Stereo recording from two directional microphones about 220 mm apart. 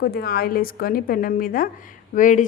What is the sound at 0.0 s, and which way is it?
A woman's voice, 45° left (ahead or behind).